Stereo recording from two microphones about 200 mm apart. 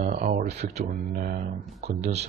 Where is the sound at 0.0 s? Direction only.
40° right (ahead or behind).